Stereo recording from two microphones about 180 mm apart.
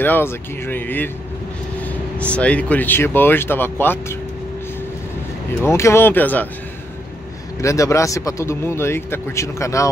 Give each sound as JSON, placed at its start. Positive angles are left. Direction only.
{"t": 0.0, "sound": "speech", "side_deg": 10}
{"t": 5.6, "sound": "speech", "side_deg": 15}
{"t": 7.6, "sound": "speech", "side_deg": 15}